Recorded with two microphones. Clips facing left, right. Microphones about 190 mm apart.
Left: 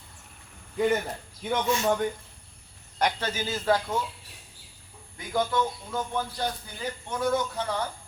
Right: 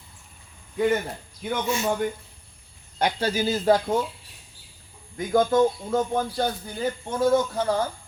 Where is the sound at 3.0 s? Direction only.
35° right (ahead or behind).